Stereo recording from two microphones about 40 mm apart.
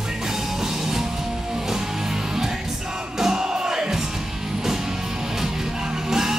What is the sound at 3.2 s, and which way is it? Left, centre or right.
Music, centre.